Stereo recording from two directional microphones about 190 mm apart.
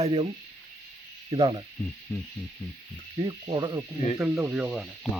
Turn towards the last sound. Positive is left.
turn(degrees=-5)  # may be behind; listen again after turning